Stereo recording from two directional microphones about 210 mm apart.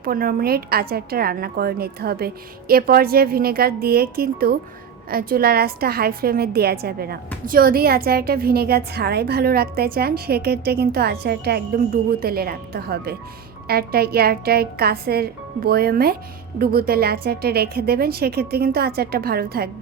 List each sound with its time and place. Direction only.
0.0 s a woman's voice: 45° right (ahead or behind)